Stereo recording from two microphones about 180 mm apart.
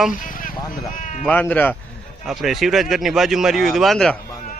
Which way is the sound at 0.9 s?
45° left (ahead or behind).